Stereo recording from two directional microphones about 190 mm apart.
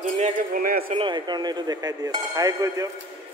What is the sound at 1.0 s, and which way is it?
Speech, 25° right (ahead or behind).